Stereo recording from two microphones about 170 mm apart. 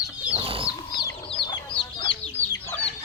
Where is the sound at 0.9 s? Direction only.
30° left (ahead or behind).